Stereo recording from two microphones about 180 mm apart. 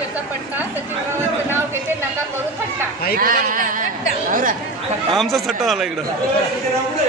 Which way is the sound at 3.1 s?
50° right (ahead or behind).